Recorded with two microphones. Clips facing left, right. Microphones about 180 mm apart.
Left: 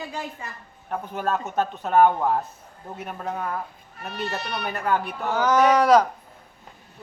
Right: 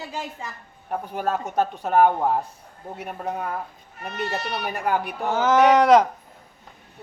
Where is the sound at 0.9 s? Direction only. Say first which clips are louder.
Right 1 dB; 10° right (ahead or behind).